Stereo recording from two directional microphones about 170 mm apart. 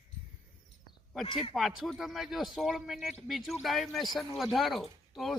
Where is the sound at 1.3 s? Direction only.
30° left (ahead or behind).